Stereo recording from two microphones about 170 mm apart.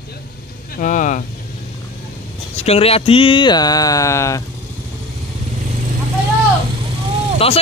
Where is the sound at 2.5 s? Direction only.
35° left (ahead or behind); by 4.4 s 15° left (ahead or behind).